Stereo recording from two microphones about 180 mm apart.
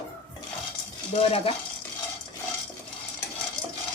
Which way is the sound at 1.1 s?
30° left (ahead or behind).